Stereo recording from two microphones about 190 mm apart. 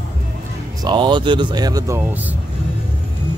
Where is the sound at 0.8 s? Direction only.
25° right (ahead or behind).